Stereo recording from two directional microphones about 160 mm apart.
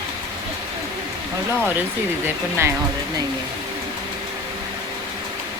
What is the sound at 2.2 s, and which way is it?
Speech, 15° right (ahead or behind).